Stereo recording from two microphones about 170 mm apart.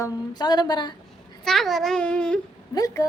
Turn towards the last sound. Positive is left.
turn(degrees=20)  # may be behind; listen again after turning